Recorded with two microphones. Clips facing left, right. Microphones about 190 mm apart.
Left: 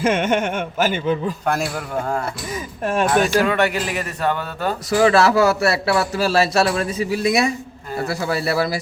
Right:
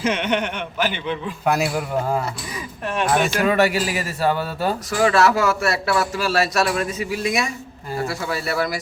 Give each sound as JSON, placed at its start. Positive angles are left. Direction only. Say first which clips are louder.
{"t": 0.0, "sound": "speech", "louder": "left 3 dB", "side_deg": 50}
{"t": 1.5, "sound": "a man's voice", "louder": "right 4 dB", "side_deg": -5}
{"t": 2.8, "sound": "speech", "louder": "left 4 dB", "side_deg": 45}
{"t": 3.4, "sound": "a man's voice", "louder": "right 1 dB", "side_deg": -5}
{"t": 4.9, "sound": "a man's voice", "louder": "left 3 dB", "side_deg": 35}